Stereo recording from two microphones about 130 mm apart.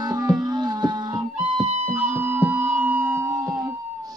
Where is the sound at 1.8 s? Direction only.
15° right (ahead or behind).